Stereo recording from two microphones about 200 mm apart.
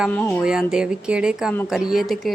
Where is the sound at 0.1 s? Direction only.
5° left (ahead or behind).